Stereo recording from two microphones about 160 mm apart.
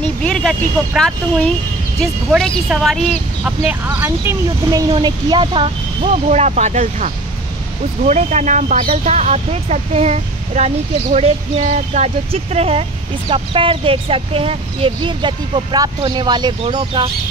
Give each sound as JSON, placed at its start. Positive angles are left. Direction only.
{"t": 0.2, "sound": "speech", "side_deg": 5}
{"t": 2.3, "sound": "speech", "side_deg": 0}
{"t": 3.4, "sound": "speech", "side_deg": -10}
{"t": 6.2, "sound": "speech", "side_deg": -45}